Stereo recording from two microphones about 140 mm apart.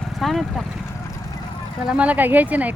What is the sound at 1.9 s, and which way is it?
Speech, 10° right (ahead or behind).